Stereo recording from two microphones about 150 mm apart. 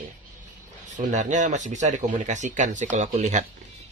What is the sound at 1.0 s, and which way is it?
Speech, 55° right (ahead or behind).